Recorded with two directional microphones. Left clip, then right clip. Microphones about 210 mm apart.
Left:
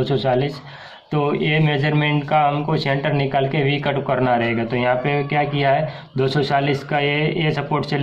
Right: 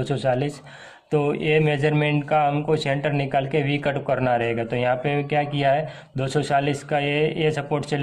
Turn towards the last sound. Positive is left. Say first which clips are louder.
# left 2 dB
turn(degrees=-45)  # may be behind; listen again after turning